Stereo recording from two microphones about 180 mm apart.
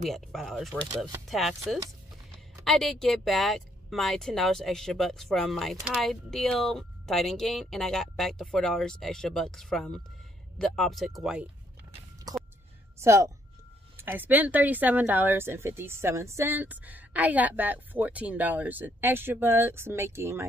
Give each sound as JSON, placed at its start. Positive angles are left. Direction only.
{"t": 0.0, "sound": "speech", "side_deg": 0}
{"t": 13.0, "sound": "speech", "side_deg": -15}